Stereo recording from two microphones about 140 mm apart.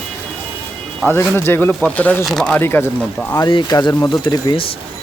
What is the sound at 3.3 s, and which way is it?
Speech, 30° left (ahead or behind).